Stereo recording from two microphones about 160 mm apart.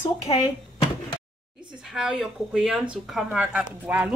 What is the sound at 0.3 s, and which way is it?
Speech, 35° left (ahead or behind).